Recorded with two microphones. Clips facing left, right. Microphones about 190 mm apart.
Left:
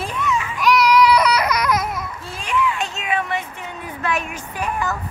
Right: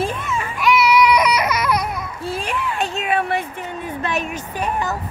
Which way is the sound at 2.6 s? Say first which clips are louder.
Right 1 dB; 50° right (ahead or behind).